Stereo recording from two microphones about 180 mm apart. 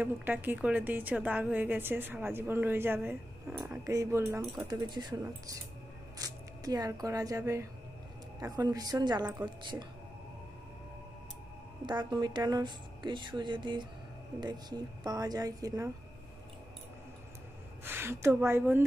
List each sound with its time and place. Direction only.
0.0 s a woman's voice: 10° right (ahead or behind); by 9.8 s 25° right (ahead or behind)
11.8 s a woman's voice: 25° right (ahead or behind)
17.8 s a woman's voice: 10° right (ahead or behind)